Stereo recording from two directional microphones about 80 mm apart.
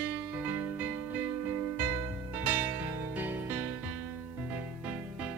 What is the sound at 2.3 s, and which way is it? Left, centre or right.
Music, right.